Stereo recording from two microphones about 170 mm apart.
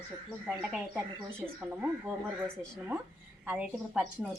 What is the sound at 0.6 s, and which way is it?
Speech, 10° right (ahead or behind).